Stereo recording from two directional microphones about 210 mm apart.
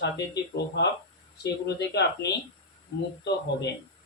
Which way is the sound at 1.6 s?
55° left (ahead or behind).